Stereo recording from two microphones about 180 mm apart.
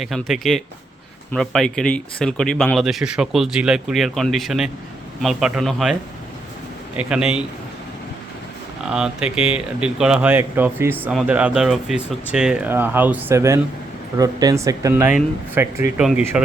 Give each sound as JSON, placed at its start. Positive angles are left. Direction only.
{"t": 0.0, "sound": "speech", "side_deg": 0}
{"t": 8.8, "sound": "speech", "side_deg": -5}